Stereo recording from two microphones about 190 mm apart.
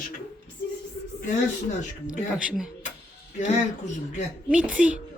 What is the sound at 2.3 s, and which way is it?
Speech, 5° right (ahead or behind).